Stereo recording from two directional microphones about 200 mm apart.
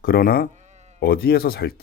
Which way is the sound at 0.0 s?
50° left (ahead or behind).